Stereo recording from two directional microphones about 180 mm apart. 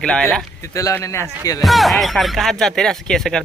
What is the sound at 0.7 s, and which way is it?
Speech, 15° left (ahead or behind).